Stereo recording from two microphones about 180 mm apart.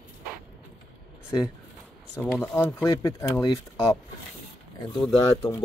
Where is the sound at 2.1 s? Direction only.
10° left (ahead or behind).